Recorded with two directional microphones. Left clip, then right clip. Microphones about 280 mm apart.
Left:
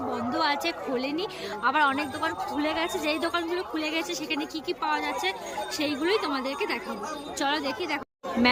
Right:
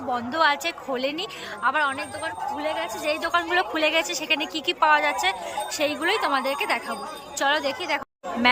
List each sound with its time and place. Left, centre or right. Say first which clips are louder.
0.3 s a woman's voice: right 5 dB; centre